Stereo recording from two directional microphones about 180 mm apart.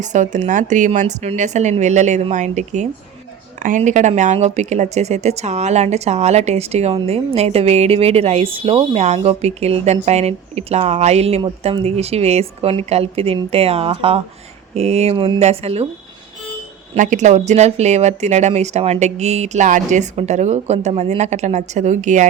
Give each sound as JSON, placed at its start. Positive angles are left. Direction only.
{"t": 0.0, "sound": "speech", "side_deg": -40}
{"t": 16.9, "sound": "speech", "side_deg": -45}